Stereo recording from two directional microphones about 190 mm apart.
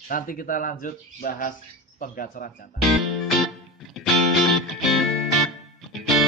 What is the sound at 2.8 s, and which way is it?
Music, centre (ahead or behind).